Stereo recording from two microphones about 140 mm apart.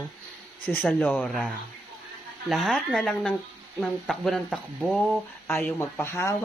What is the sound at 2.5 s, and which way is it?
Speech, centre (ahead or behind).